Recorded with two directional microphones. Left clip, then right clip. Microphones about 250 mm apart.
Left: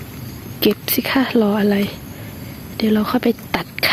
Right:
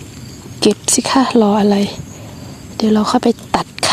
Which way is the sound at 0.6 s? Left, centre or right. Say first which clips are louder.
Right 4 dB; centre.